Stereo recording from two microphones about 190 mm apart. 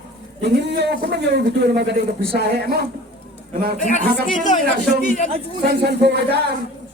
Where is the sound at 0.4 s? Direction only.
65° right (ahead or behind).